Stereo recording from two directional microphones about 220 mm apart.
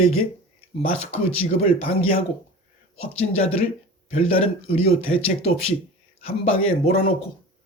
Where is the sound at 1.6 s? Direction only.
25° left (ahead or behind).